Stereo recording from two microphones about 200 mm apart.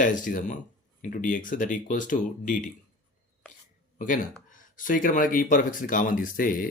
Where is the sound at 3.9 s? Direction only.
40° left (ahead or behind).